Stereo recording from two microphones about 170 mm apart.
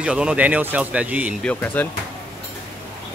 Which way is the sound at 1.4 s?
10° left (ahead or behind).